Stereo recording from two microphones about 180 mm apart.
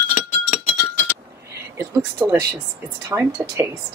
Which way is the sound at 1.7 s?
15° right (ahead or behind).